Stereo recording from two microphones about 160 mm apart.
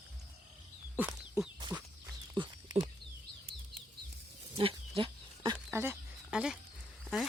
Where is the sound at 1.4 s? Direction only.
15° right (ahead or behind).